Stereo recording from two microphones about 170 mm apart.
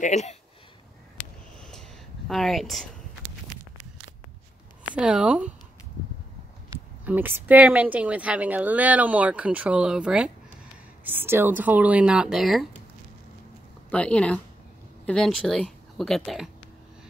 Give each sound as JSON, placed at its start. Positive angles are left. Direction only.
{"t": 0.0, "sound": "speech", "side_deg": 40}
{"t": 1.6, "sound": "a sound", "side_deg": 0}
{"t": 4.9, "sound": "a woman's voice", "side_deg": -5}
{"t": 7.1, "sound": "a woman's voice", "side_deg": -10}
{"t": 13.8, "sound": "a woman's voice", "side_deg": 5}